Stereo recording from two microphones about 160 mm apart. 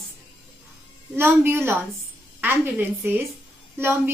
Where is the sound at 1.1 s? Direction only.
15° right (ahead or behind).